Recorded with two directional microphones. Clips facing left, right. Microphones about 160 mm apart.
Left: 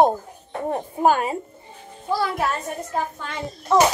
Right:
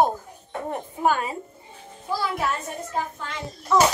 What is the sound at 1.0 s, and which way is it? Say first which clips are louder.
Speech: left 4 dB; 45° left (ahead or behind).